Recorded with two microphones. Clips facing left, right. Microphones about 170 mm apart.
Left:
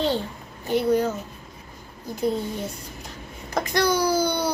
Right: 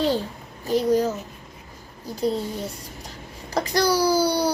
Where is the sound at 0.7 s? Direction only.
35° right (ahead or behind).